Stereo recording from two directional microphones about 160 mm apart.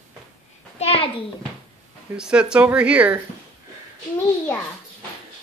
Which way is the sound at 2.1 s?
5° right (ahead or behind).